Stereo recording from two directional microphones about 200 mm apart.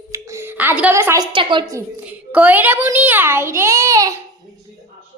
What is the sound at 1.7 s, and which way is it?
A child's voice, 5° right (ahead or behind).